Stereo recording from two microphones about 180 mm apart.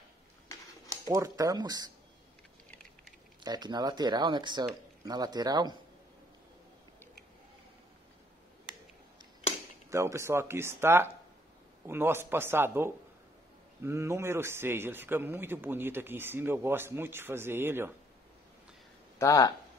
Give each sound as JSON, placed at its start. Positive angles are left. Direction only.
{"t": 1.0, "sound": "speech", "side_deg": -20}
{"t": 3.4, "sound": "speech", "side_deg": -25}
{"t": 9.8, "sound": "a man's voice", "side_deg": -15}
{"t": 19.1, "sound": "speech", "side_deg": 20}